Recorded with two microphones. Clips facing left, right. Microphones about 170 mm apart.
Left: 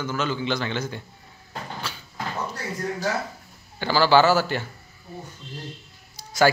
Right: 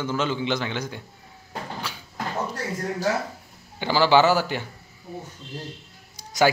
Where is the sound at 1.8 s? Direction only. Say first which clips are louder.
Even; 15° right (ahead or behind).